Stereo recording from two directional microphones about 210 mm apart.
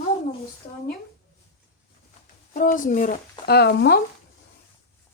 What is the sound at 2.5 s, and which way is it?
Speech, 40° left (ahead or behind).